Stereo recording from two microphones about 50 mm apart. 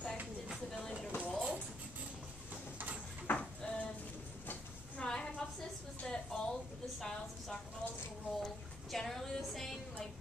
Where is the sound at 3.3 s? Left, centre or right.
Left.